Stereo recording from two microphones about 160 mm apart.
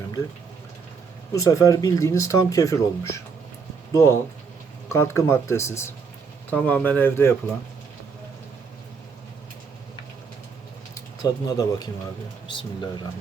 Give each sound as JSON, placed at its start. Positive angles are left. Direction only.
{"t": 1.3, "sound": "speech", "side_deg": 20}
{"t": 11.4, "sound": "speech", "side_deg": 25}